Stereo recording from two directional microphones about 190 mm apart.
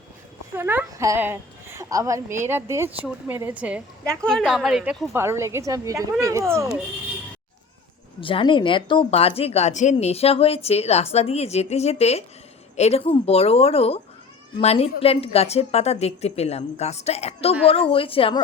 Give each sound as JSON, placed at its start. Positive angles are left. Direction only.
{"t": 0.5, "sound": "a woman's voice", "side_deg": -10}
{"t": 4.0, "sound": "a woman's voice", "side_deg": 5}
{"t": 8.2, "sound": "a woman's voice", "side_deg": 25}